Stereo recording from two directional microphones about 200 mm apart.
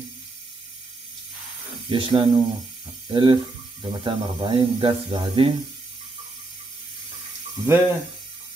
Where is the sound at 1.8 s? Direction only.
25° right (ahead or behind).